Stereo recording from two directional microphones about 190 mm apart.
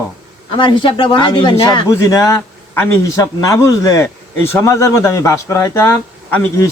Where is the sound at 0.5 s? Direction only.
25° left (ahead or behind).